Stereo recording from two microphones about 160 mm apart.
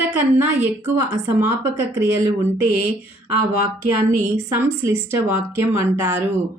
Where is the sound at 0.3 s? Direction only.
10° right (ahead or behind).